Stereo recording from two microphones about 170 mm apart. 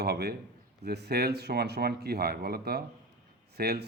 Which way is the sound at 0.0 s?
70° right (ahead or behind).